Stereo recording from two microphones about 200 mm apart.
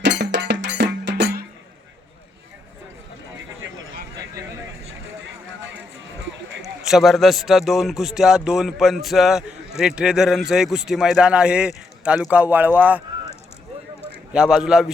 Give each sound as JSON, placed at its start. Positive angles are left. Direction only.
{"t": 0.0, "sound": "music", "side_deg": -60}
{"t": 6.6, "sound": "speech", "side_deg": 0}
{"t": 14.3, "sound": "speech", "side_deg": -5}